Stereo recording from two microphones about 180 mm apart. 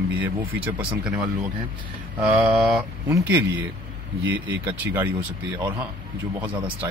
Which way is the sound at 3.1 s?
15° right (ahead or behind).